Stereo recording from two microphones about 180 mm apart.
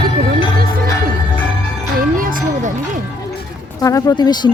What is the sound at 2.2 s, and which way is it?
Music, 50° right (ahead or behind).